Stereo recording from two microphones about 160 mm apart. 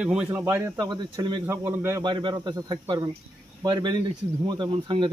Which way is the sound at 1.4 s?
15° right (ahead or behind).